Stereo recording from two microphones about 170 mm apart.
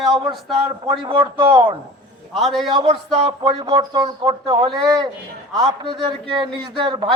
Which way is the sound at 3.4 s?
25° right (ahead or behind).